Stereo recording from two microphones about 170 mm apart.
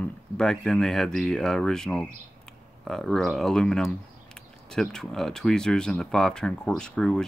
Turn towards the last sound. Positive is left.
turn(degrees=5)  # may be behind; listen again after turning